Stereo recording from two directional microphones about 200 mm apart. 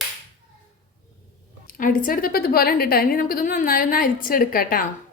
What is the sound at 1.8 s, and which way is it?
A woman's voice, 45° left (ahead or behind).